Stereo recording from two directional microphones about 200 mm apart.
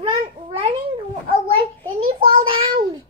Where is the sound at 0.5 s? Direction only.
25° right (ahead or behind).